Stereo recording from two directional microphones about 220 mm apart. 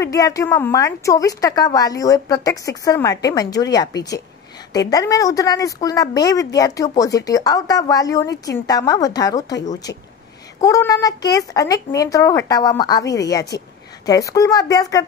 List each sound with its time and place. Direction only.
0.0 s speech: 15° left (ahead or behind)
10.6 s speech: 15° left (ahead or behind)